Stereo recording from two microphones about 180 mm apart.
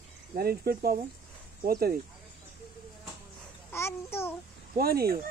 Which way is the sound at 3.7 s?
15° left (ahead or behind).